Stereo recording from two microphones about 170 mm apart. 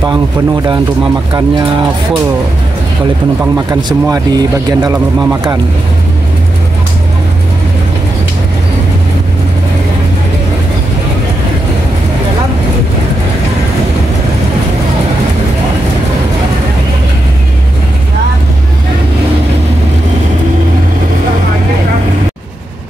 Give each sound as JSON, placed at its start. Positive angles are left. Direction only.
{"t": 3.5, "sound": "a man's voice", "side_deg": -15}